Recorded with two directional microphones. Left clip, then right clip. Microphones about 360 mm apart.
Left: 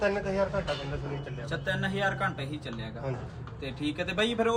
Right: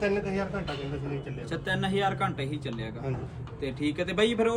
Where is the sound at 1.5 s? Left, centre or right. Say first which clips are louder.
Right 2 dB; centre.